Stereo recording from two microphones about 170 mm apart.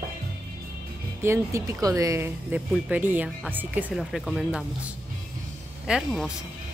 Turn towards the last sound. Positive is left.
turn(degrees=-5)  # may be behind; listen again after turning